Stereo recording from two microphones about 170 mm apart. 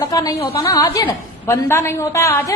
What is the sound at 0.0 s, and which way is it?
A woman's voice, 20° left (ahead or behind).